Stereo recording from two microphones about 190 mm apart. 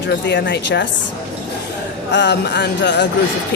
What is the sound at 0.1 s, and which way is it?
Speech, 65° left (ahead or behind).